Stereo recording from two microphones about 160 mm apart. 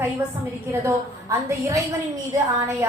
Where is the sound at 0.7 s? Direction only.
15° right (ahead or behind).